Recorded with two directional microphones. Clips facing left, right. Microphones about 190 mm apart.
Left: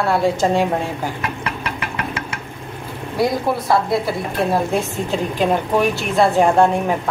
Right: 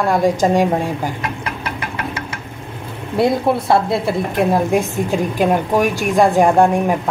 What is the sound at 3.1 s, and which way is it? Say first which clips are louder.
Speech: right 3 dB; 25° right (ahead or behind).